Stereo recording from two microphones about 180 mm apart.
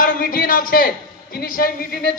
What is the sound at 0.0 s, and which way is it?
A man's voice, 50° left (ahead or behind).